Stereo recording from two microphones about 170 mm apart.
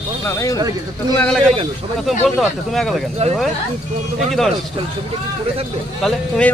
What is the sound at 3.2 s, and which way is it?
Speech, 40° right (ahead or behind).